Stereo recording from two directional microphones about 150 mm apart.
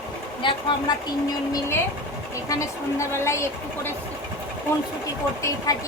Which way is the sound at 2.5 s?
20° left (ahead or behind).